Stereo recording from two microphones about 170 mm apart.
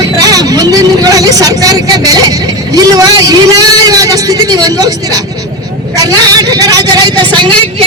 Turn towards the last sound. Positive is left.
turn(degrees=-30)  # may be behind; listen again after turning